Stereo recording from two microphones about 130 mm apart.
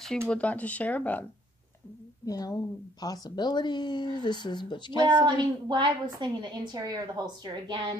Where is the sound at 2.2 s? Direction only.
30° left (ahead or behind).